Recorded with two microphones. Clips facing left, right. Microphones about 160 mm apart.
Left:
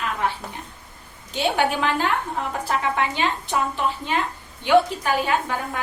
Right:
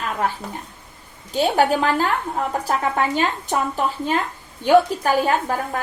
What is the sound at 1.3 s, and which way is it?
A woman's voice, 40° right (ahead or behind).